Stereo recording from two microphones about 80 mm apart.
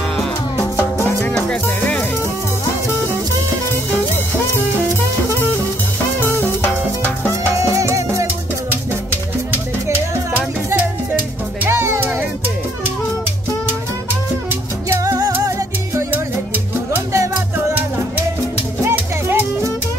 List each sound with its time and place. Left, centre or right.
1.3 s music: centre
6.1 s music: left
7.5 s music: right
9.5 s music: right
17.1 s music: right
18.9 s music: right